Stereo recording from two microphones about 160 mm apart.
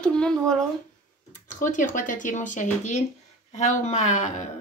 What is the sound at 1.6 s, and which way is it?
A woman's voice, 55° left (ahead or behind).